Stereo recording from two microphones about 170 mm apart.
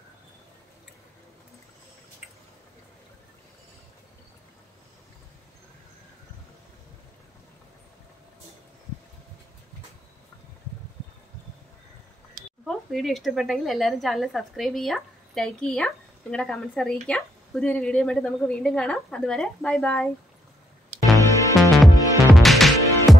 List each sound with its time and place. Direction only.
12.6 s speech: centre (ahead or behind)
21.3 s music: 20° left (ahead or behind)
21.5 s music: centre (ahead or behind)